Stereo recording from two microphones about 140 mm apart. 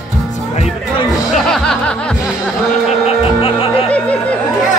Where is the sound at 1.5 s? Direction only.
5° left (ahead or behind).